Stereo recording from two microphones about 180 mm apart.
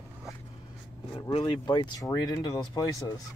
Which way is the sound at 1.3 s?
30° left (ahead or behind).